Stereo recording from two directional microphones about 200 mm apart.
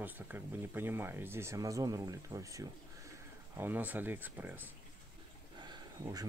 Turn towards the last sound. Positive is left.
turn(degrees=-20)  # may be behind; listen again after turning